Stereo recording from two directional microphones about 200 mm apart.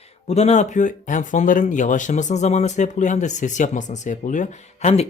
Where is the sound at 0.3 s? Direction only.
30° left (ahead or behind).